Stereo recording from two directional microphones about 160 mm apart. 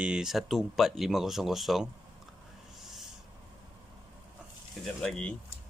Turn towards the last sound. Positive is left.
turn(degrees=5)  # may be behind; listen again after turning